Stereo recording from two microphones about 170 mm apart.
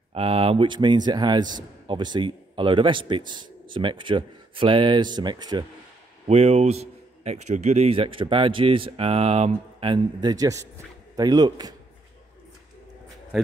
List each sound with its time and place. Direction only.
0.1 s a man's voice: 35° right (ahead or behind)
6.2 s a man's voice: 40° right (ahead or behind); by 11.7 s 25° right (ahead or behind)